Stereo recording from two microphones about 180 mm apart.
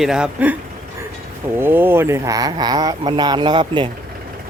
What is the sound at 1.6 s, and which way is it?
Speech, 10° right (ahead or behind).